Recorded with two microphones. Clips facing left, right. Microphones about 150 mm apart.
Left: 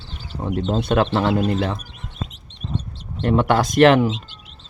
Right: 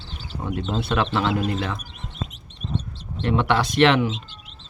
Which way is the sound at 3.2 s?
45° left (ahead or behind).